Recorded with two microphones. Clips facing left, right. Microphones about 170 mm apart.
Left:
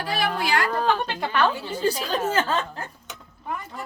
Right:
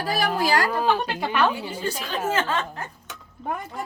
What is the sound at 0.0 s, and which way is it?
Speech, 40° right (ahead or behind).